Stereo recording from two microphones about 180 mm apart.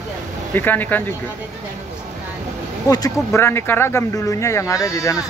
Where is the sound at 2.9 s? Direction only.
20° left (ahead or behind).